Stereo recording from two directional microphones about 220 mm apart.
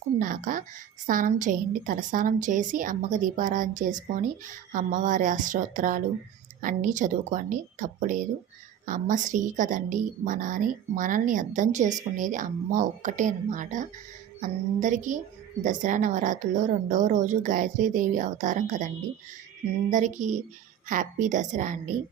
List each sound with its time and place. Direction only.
0.2 s a woman's voice: 35° right (ahead or behind)
19.9 s a woman's voice: 35° right (ahead or behind)